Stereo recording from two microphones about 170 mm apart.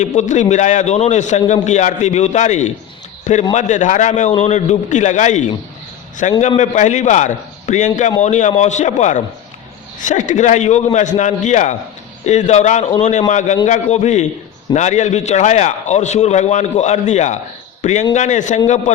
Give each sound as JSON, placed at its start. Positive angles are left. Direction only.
{"t": 0.0, "sound": "a man's voice", "side_deg": 45}